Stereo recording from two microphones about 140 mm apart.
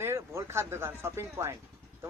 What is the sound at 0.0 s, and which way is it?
A man's voice, 20° right (ahead or behind).